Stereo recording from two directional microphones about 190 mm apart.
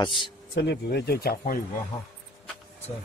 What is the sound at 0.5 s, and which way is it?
Speech, 60° left (ahead or behind).